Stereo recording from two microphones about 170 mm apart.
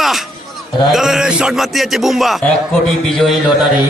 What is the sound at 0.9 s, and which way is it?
A man's voice, centre (ahead or behind).